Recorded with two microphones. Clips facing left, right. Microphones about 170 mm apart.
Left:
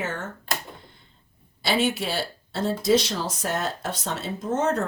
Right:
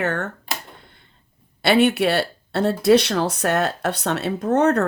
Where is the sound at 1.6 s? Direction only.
60° right (ahead or behind).